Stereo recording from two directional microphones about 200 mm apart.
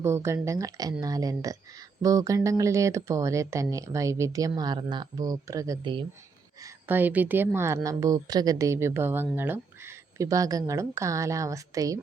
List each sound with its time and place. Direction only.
0.0 s speech: 15° right (ahead or behind)
6.6 s speech: 15° right (ahead or behind)